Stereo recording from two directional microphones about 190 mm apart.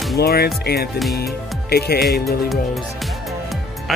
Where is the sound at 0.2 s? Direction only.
55° left (ahead or behind).